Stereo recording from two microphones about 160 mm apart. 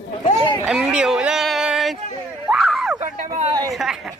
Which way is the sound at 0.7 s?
5° right (ahead or behind).